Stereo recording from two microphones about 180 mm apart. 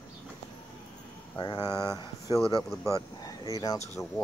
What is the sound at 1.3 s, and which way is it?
Speech, 25° left (ahead or behind).